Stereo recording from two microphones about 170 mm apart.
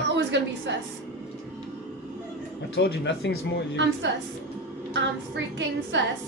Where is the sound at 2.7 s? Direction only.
85° left.